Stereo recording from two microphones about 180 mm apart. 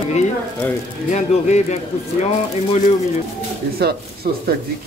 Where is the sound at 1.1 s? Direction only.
40° left (ahead or behind).